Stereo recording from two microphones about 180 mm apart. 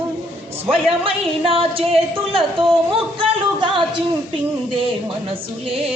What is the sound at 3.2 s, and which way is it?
Music, 25° right (ahead or behind).